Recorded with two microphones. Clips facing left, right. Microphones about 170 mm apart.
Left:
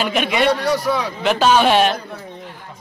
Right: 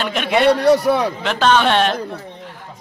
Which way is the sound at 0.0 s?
5° left (ahead or behind).